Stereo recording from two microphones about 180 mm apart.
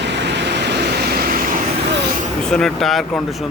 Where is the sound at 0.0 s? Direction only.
75° right (ahead or behind); by 1.4 s 60° right (ahead or behind).